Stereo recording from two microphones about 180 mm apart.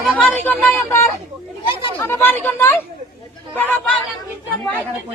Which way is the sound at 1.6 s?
30° left (ahead or behind).